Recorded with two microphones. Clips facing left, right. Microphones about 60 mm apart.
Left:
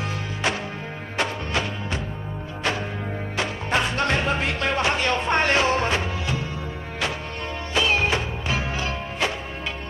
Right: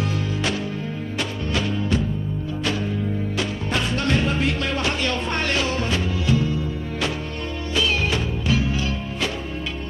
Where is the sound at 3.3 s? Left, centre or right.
Left.